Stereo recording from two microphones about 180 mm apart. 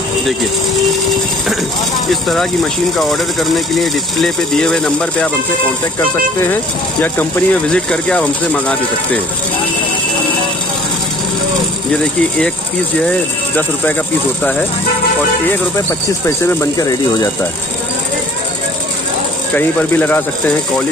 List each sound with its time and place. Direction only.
2.0 s speech: centre (ahead or behind)
6.4 s speech: 10° left (ahead or behind)
11.9 s speech: 5° left (ahead or behind)
16.3 s speech: 15° left (ahead or behind)
19.5 s speech: 10° left (ahead or behind)